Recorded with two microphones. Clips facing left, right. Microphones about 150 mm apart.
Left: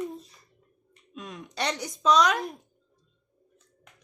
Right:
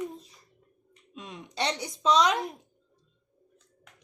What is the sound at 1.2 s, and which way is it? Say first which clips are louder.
Speech: even; 25° right (ahead or behind).